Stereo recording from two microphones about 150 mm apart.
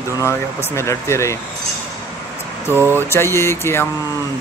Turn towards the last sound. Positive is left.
turn(degrees=15)  # may be behind; listen again after turning